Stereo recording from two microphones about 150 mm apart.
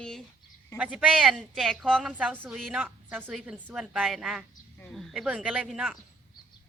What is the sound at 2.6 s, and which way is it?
Speech, centre (ahead or behind).